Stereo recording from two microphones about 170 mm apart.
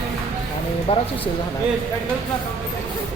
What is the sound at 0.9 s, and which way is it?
Speech, 35° left (ahead or behind).